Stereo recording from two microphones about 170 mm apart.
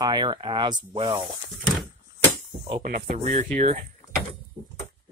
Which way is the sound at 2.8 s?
45° right (ahead or behind).